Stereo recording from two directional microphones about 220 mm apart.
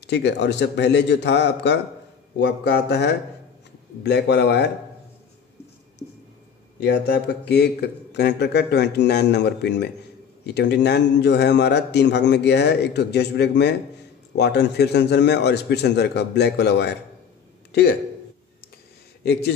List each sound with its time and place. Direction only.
0.0 s a man's voice: 50° left (ahead or behind)
6.8 s a man's voice: 50° left (ahead or behind)